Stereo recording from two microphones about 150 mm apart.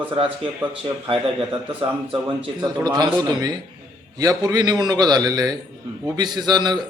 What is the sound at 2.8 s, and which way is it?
A man's voice, 25° right (ahead or behind).